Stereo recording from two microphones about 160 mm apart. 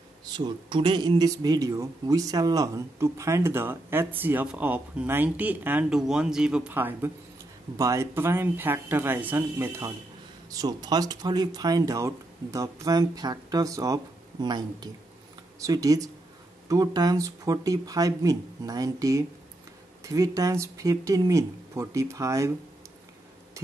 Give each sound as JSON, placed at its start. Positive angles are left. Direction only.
{"t": 0.2, "sound": "speech", "side_deg": -30}